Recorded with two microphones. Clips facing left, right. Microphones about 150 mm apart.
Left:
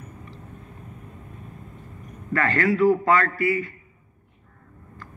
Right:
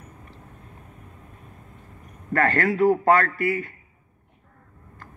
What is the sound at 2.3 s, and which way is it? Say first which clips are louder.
A man's voice: even; 50° right (ahead or behind).